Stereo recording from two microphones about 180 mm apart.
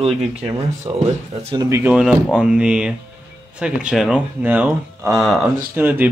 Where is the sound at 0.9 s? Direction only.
30° right (ahead or behind); by 5.2 s 15° right (ahead or behind).